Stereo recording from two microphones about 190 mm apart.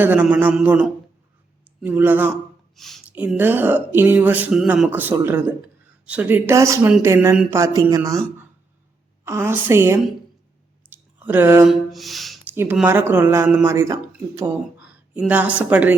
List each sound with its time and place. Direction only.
0.0 s speech: 10° right (ahead or behind)
2.7 s speech: centre (ahead or behind)
3.2 s speech: 10° right (ahead or behind)
9.2 s speech: 10° right (ahead or behind)